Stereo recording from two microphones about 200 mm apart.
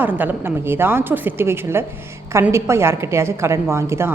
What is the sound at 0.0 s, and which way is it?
A woman's voice, 10° right (ahead or behind).